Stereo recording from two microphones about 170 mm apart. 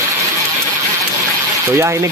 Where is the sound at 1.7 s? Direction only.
15° right (ahead or behind).